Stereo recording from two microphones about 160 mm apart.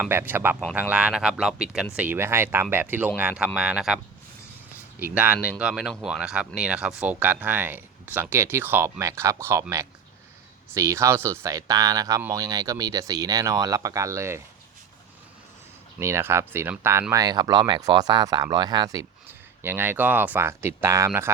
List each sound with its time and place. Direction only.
0.0 s speech: 10° right (ahead or behind)
16.0 s speech: 15° right (ahead or behind)
19.3 s speech: 15° right (ahead or behind)